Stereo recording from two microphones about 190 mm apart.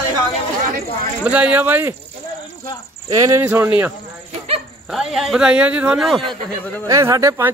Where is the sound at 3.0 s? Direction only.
20° right (ahead or behind).